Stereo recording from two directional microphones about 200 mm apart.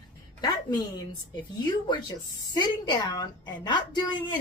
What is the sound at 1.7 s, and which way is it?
A woman's voice, 25° left (ahead or behind).